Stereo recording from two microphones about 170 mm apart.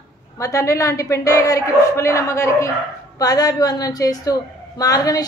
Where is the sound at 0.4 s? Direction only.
15° left (ahead or behind).